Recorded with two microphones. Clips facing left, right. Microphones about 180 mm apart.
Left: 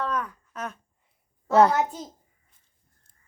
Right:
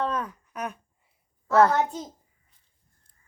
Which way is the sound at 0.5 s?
15° right (ahead or behind).